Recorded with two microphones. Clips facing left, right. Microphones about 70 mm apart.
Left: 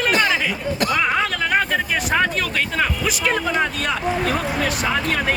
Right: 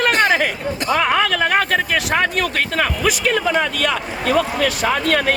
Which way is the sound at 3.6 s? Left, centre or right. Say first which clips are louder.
Right 2 dB; right.